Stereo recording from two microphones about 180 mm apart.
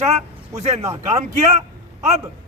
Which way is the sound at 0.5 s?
40° right (ahead or behind).